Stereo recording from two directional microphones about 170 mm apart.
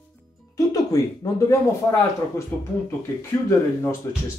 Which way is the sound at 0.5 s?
20° left (ahead or behind).